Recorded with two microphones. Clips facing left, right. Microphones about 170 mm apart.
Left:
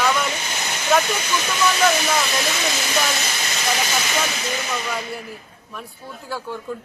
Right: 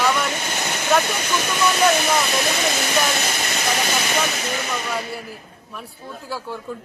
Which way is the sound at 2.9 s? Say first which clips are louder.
Right 2 dB; 55° right (ahead or behind).